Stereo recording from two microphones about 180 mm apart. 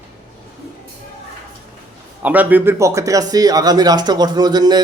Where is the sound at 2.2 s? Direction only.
10° right (ahead or behind).